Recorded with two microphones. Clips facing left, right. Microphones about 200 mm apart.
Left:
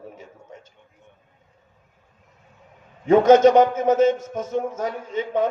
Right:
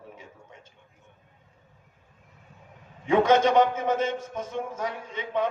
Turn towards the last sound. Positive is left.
turn(degrees=45)  # may be behind; listen again after turning